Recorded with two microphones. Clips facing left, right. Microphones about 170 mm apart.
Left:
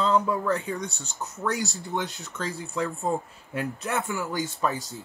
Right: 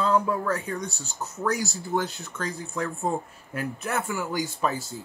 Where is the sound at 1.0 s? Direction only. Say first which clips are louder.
Right 1 dB; 35° right (ahead or behind).